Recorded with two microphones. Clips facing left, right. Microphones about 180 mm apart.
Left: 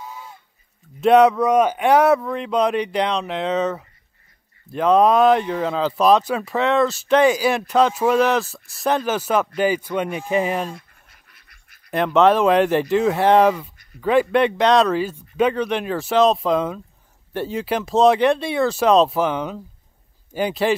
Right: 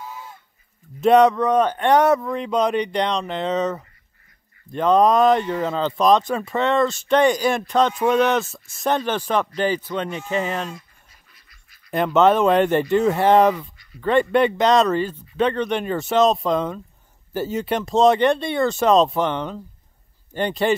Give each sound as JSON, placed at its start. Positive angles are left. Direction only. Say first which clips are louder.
{"t": 1.0, "sound": "speech", "louder": "left 1 dB", "side_deg": 0}
{"t": 10.8, "sound": "a sound", "louder": "left 1 dB", "side_deg": 60}
{"t": 11.9, "sound": "speech", "louder": "left 1 dB", "side_deg": 0}